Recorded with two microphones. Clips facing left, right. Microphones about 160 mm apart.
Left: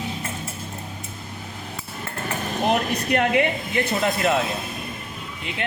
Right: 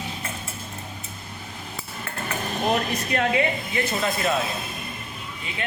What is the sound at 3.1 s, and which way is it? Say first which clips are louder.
A woman's voice: left 3 dB; 60° left (ahead or behind).